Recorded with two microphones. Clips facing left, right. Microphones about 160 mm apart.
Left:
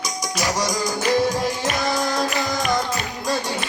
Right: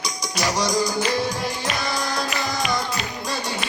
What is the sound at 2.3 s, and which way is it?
Music, 50° left (ahead or behind).